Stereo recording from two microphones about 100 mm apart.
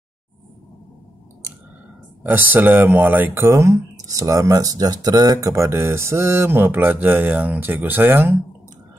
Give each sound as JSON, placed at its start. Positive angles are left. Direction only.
{"t": 2.2, "sound": "speech", "side_deg": -20}